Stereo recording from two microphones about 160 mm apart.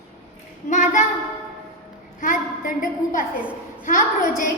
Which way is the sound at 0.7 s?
50° left (ahead or behind).